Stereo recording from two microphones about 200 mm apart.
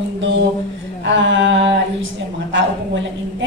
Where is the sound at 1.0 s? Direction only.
65° right (ahead or behind).